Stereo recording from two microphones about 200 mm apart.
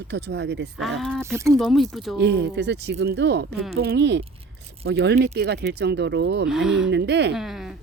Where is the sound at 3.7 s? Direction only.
55° right (ahead or behind).